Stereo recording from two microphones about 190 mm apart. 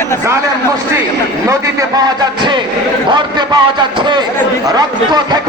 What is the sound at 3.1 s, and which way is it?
Speech, 25° right (ahead or behind).